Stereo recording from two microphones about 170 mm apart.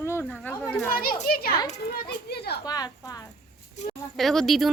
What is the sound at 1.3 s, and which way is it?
A child's voice, 60° left (ahead or behind).